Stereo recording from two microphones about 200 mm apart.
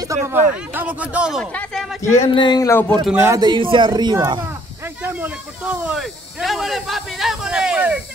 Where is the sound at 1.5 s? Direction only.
5° left (ahead or behind).